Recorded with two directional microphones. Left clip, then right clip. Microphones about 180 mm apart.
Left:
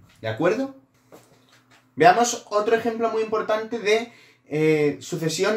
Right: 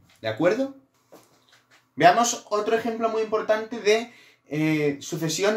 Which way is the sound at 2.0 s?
25° right (ahead or behind).